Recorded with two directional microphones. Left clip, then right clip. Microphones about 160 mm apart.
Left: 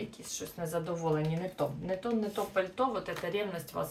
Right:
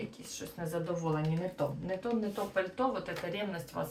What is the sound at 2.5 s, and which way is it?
Speech, 20° left (ahead or behind).